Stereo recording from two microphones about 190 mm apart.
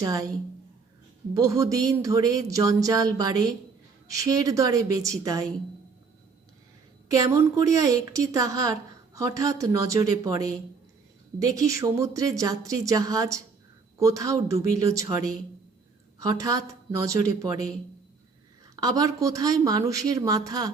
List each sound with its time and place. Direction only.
0.0 s speech: 20° right (ahead or behind)
1.3 s a woman's voice: 15° right (ahead or behind)
7.1 s a woman's voice: 15° right (ahead or behind)
18.8 s speech: 20° right (ahead or behind)